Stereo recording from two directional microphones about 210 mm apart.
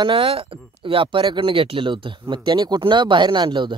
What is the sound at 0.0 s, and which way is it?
Speech, 25° right (ahead or behind).